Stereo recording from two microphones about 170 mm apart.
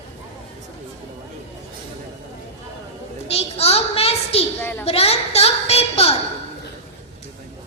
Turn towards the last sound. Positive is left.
turn(degrees=35)  # may be behind; listen again after turning